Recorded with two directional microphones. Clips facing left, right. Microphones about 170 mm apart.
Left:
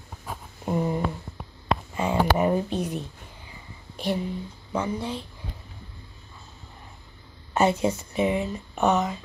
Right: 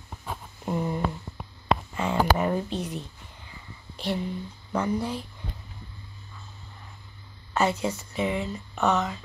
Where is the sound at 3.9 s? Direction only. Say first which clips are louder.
Left 2 dB; 15° left (ahead or behind).